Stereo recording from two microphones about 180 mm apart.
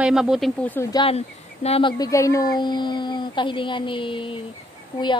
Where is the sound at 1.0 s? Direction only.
35° left (ahead or behind).